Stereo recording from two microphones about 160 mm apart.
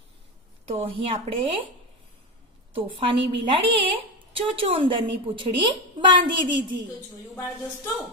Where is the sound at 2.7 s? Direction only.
35° right (ahead or behind).